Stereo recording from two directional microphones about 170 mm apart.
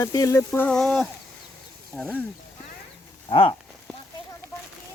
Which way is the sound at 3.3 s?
30° left (ahead or behind).